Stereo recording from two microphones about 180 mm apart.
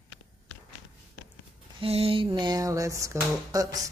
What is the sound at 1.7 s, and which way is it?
Speech, 35° right (ahead or behind).